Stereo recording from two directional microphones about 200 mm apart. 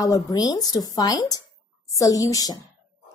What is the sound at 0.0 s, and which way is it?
A woman's voice, 20° left (ahead or behind).